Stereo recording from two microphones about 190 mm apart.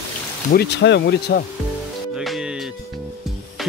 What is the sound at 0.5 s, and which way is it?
Speech, 65° left (ahead or behind).